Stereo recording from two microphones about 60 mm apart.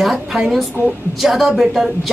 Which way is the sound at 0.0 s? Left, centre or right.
Centre.